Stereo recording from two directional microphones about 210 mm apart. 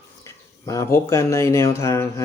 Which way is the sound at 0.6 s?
15° left (ahead or behind).